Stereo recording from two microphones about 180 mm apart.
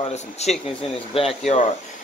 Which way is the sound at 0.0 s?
35° left (ahead or behind).